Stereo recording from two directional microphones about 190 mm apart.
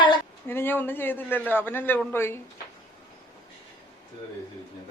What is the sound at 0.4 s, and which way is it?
Speech, 10° left (ahead or behind).